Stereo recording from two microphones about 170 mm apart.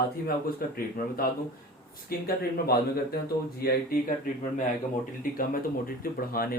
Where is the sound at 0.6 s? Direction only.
60° left (ahead or behind).